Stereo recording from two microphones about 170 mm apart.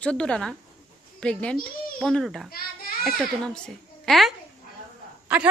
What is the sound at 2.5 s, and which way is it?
Speech, 60° left (ahead or behind).